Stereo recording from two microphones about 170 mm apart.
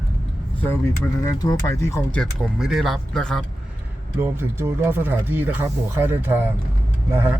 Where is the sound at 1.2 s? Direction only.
15° left (ahead or behind).